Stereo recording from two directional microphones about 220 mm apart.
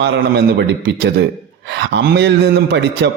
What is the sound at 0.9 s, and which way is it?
Speech, 45° right (ahead or behind).